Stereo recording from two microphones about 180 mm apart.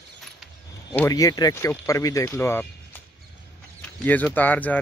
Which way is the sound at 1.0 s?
20° left (ahead or behind).